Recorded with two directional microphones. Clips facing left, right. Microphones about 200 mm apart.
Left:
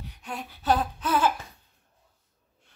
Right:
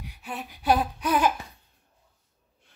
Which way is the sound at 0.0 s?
10° right (ahead or behind).